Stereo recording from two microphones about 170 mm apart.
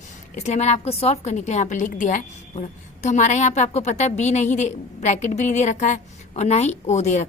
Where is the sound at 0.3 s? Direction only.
40° left (ahead or behind).